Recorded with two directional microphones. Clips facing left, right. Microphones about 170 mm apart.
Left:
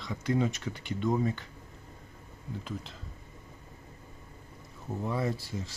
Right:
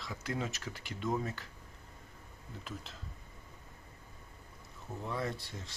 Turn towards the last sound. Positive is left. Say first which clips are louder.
# left 6 dB
turn(degrees=5)  # may be behind; listen again after turning